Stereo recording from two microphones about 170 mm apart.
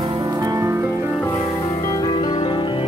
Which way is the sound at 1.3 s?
20° left (ahead or behind).